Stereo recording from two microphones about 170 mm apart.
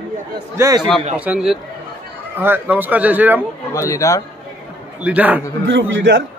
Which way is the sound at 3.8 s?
20° left (ahead or behind).